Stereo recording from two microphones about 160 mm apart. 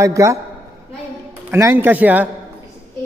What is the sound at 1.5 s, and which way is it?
Speech, 15° right (ahead or behind).